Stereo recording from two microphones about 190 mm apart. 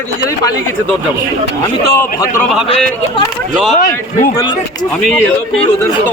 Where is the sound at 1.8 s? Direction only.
15° left (ahead or behind).